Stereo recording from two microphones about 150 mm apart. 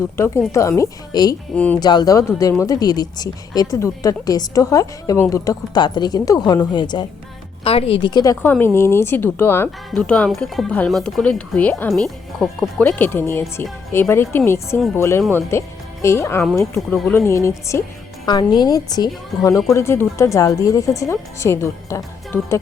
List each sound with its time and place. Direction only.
0.2 s speech: 20° left (ahead or behind)
1.5 s speech: 10° left (ahead or behind)
1.8 s speech: 25° left (ahead or behind); by 12.6 s centre (ahead or behind)
12.8 s speech: 15° left (ahead or behind)
18.3 s speech: 30° left (ahead or behind)